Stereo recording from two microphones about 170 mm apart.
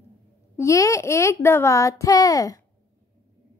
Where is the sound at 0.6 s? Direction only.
20° left (ahead or behind).